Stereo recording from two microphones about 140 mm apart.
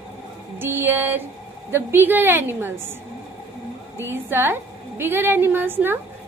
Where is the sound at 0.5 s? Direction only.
15° right (ahead or behind).